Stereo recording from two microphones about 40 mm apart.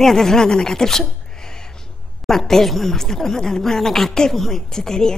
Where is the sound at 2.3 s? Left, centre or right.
Centre.